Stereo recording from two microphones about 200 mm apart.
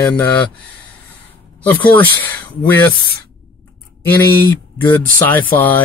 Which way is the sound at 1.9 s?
10° left (ahead or behind).